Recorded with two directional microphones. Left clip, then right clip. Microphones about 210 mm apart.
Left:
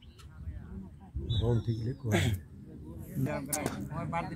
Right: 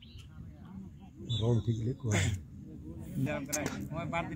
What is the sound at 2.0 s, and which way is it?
Speech, 40° left (ahead or behind).